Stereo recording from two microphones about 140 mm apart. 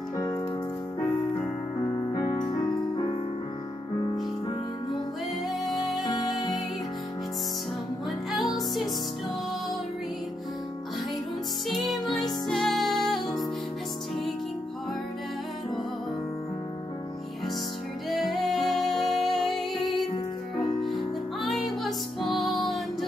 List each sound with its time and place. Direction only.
0.9 s music: 15° left (ahead or behind)
2.1 s music: 30° left (ahead or behind)
5.5 s music: centre (ahead or behind)
6.0 s music: 30° left (ahead or behind)
8.3 s music: centre (ahead or behind)
11.7 s music: centre (ahead or behind)
18.1 s music: centre (ahead or behind)